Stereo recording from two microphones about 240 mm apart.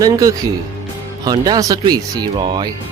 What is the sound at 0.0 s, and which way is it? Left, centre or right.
Speech, centre.